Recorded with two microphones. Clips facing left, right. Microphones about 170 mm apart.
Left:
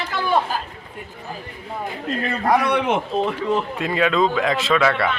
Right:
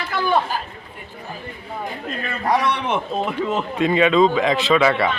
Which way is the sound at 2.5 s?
50° left (ahead or behind).